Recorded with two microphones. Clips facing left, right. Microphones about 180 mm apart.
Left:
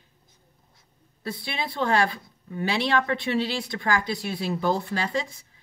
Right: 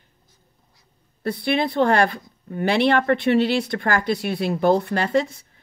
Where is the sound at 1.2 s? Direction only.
60° right (ahead or behind).